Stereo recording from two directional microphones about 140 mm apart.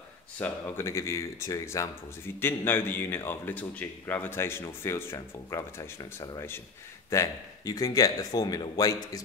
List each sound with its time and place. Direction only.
0.4 s speech: 15° left (ahead or behind)